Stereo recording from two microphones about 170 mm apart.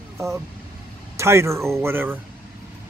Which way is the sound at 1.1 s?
15° right (ahead or behind).